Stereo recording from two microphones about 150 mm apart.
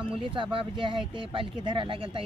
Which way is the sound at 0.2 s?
35° right (ahead or behind).